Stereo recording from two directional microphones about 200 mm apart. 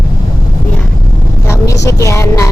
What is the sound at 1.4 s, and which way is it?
Speech, 15° left (ahead or behind).